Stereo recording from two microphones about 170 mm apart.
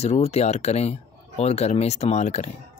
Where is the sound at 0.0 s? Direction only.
40° left (ahead or behind).